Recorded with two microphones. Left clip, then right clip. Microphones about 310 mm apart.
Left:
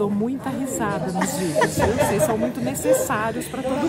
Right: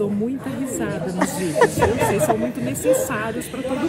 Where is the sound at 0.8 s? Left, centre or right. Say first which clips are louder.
Right 1 dB; centre.